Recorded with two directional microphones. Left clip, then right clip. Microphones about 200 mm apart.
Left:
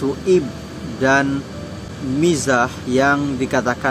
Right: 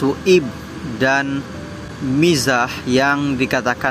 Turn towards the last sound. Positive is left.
turn(degrees=-15)  # may be behind; listen again after turning